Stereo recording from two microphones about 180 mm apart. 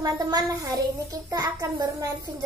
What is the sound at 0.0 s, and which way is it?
A child's voice, 20° right (ahead or behind).